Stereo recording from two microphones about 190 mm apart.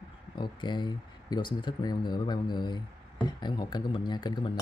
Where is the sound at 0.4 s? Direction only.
25° left (ahead or behind).